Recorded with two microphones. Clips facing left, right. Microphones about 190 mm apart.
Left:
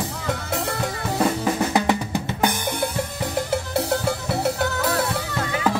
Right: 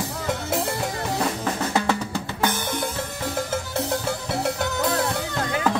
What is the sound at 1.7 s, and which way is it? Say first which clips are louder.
Drum: left 2 dB; 15° left (ahead or behind).